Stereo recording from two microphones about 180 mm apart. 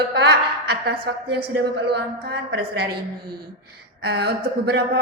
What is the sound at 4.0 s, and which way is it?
Speech, 65° right (ahead or behind).